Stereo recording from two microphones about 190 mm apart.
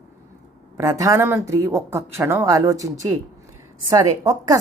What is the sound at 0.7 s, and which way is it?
Speech, 15° right (ahead or behind).